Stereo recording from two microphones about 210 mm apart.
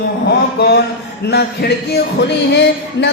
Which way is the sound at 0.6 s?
50° left (ahead or behind).